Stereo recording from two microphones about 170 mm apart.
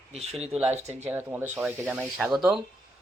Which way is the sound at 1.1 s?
10° right (ahead or behind).